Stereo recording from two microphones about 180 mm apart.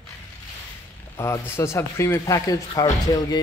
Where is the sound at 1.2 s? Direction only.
15° left (ahead or behind).